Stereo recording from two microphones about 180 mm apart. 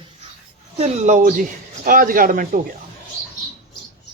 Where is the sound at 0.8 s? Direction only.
40° right (ahead or behind).